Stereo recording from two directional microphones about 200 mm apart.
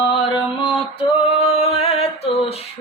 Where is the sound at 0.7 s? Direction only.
30° left (ahead or behind).